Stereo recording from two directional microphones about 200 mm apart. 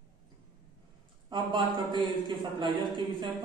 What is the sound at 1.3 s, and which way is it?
A man's voice, 25° right (ahead or behind).